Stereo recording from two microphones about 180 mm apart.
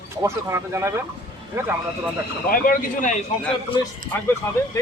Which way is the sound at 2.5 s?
50° left (ahead or behind).